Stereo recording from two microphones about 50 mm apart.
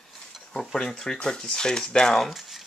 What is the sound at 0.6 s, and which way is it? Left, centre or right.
Speech, centre.